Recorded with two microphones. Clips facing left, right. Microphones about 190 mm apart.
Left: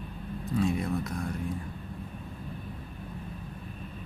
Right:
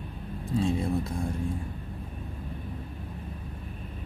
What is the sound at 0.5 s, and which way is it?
Speech, 25° right (ahead or behind).